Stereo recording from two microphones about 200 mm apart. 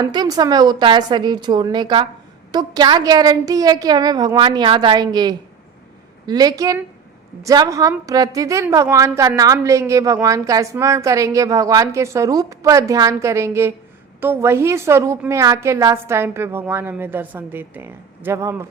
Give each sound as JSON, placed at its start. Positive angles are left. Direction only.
{"t": 0.0, "sound": "a woman's voice", "side_deg": -20}